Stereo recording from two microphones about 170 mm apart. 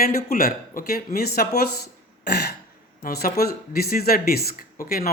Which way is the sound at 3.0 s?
65° left (ahead or behind).